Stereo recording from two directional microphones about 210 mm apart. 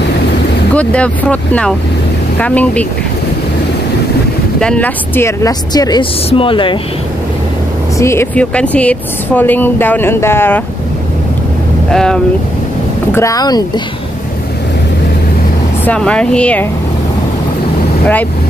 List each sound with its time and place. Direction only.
0.7 s a woman's voice: 5° left (ahead or behind)
4.6 s speech: 5° left (ahead or behind); by 6.8 s 25° left (ahead or behind)
8.0 s a woman's voice: 10° left (ahead or behind)
11.9 s speech: 5° left (ahead or behind)
13.1 s a woman's voice: 15° left (ahead or behind)
15.8 s speech: 5° left (ahead or behind)